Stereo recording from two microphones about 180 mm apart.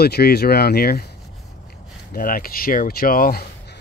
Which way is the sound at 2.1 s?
55° left (ahead or behind).